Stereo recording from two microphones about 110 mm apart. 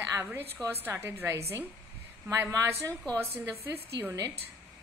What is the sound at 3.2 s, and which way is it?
Speech, 20° right (ahead or behind).